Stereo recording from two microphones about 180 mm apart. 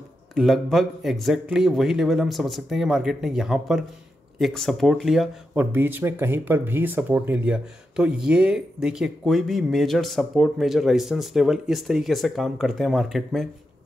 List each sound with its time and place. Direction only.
0.3 s speech: centre (ahead or behind)